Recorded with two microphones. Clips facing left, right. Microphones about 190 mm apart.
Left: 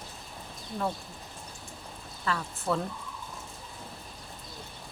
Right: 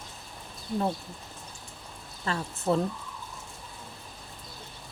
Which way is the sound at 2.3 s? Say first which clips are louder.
Right 3 dB; 25° right (ahead or behind).